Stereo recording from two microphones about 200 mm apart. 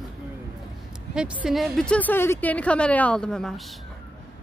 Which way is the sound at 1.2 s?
5° right (ahead or behind).